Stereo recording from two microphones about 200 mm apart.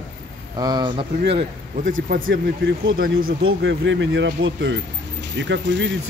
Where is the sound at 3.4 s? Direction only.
65° right (ahead or behind).